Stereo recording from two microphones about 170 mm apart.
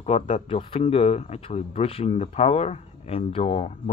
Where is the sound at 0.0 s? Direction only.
40° left (ahead or behind).